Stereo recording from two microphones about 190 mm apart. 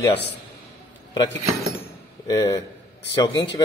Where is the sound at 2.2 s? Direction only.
20° left (ahead or behind).